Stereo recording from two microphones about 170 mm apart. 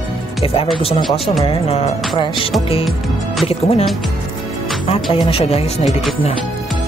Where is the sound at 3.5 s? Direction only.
35° left (ahead or behind).